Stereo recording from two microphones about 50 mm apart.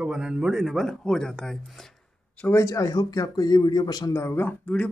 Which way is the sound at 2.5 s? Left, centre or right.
Left.